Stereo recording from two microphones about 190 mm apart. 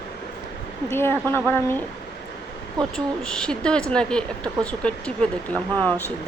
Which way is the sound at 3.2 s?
5° left (ahead or behind).